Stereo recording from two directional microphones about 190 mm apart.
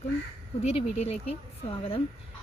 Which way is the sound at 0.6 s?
30° left (ahead or behind).